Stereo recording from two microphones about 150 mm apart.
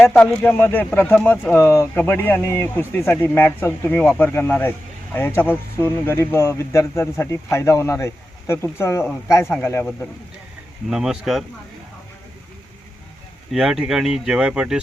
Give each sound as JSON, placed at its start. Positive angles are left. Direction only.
{"t": 0.0, "sound": "a man's voice", "side_deg": 10}
{"t": 10.8, "sound": "speech", "side_deg": -5}
{"t": 13.5, "sound": "speech", "side_deg": -5}